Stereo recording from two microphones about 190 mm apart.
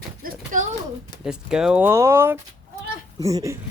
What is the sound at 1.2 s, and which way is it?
Speech, 5° right (ahead or behind).